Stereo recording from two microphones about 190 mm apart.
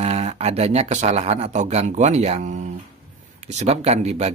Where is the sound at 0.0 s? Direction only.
35° right (ahead or behind).